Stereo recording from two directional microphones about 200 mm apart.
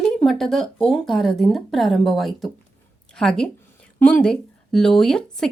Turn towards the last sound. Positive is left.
turn(degrees=5)  # may be behind; listen again after turning